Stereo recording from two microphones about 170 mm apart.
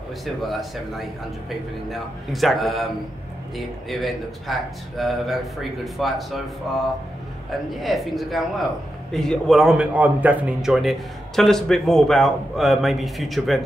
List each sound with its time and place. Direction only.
0.2 s a man's voice: centre (ahead or behind)